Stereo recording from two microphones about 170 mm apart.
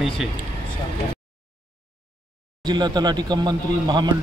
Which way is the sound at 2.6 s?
25° right (ahead or behind).